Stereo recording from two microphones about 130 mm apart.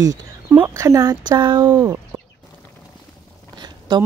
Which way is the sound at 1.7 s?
20° right (ahead or behind).